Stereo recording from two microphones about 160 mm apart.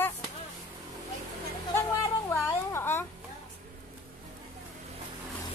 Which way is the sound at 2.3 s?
15° left (ahead or behind).